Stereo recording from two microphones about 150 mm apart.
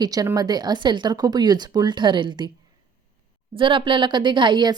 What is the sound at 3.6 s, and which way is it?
A woman's voice, 35° right (ahead or behind).